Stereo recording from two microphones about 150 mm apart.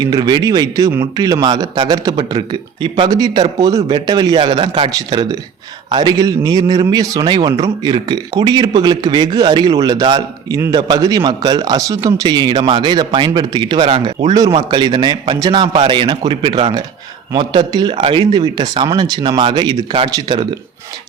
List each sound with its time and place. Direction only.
0.0 s speech: 30° right (ahead or behind)